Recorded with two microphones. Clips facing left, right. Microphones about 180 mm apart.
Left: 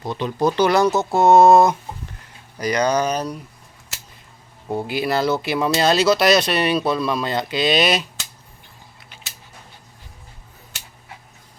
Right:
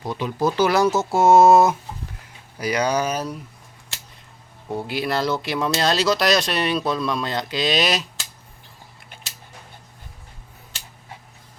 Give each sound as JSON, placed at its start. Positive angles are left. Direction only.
{"t": 0.0, "sound": "speech", "side_deg": -10}
{"t": 4.9, "sound": "speech", "side_deg": 0}